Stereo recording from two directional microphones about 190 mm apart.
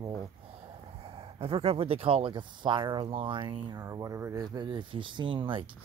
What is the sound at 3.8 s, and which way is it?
Speech, 15° right (ahead or behind).